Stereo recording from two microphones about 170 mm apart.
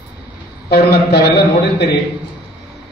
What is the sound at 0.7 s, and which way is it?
Speech, 70° left (ahead or behind).